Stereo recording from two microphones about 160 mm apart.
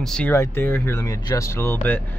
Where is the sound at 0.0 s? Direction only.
5° left (ahead or behind).